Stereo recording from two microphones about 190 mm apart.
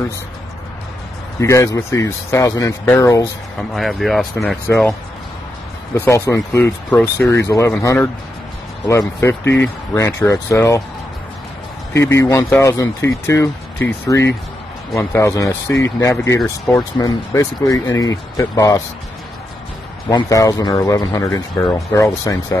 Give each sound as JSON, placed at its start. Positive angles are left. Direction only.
{"t": 1.4, "sound": "speech", "side_deg": 15}
{"t": 3.7, "sound": "speech", "side_deg": 0}
{"t": 5.9, "sound": "speech", "side_deg": 10}
{"t": 11.9, "sound": "speech", "side_deg": 15}
{"t": 20.1, "sound": "speech", "side_deg": 20}